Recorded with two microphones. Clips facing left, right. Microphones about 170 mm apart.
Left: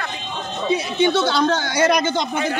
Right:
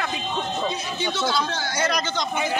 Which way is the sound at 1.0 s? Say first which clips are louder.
Left 7 dB; 60° left (ahead or behind).